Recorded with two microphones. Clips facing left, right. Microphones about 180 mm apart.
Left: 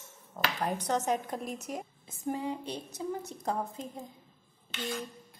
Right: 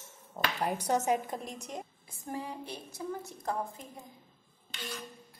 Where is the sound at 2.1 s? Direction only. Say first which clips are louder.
Left 7 dB; 20° left (ahead or behind).